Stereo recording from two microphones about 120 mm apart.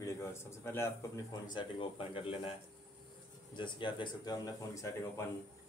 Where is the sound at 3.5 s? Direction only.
40° left (ahead or behind).